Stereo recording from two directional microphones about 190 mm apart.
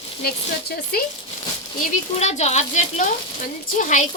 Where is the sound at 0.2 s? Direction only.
55° left (ahead or behind).